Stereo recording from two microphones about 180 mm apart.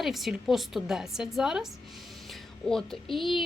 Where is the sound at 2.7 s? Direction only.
Centre (ahead or behind).